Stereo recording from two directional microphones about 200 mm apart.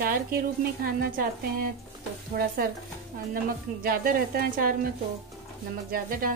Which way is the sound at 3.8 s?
45° right (ahead or behind).